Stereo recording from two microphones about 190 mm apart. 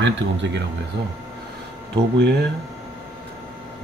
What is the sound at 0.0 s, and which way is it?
Speech, 70° right (ahead or behind).